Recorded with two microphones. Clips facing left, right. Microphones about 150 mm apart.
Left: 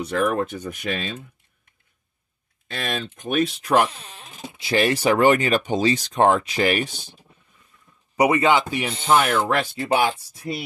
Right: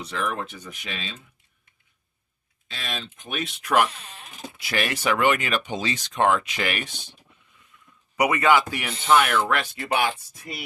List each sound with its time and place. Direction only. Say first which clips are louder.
0.0 s speech: left 7 dB; 50° left (ahead or behind)
2.7 s speech: left 7 dB; 55° left (ahead or behind); by 7.6 s 35° left (ahead or behind)
8.2 s speech: left 2 dB; 25° left (ahead or behind)